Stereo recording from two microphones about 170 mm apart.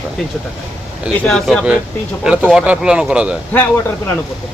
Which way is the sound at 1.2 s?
Centre (ahead or behind).